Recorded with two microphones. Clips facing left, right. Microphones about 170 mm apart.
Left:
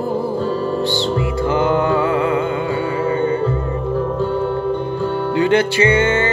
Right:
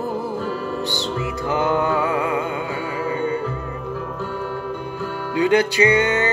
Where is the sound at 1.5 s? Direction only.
20° left (ahead or behind).